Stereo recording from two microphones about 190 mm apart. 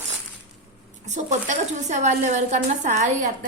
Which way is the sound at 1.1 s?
40° right (ahead or behind).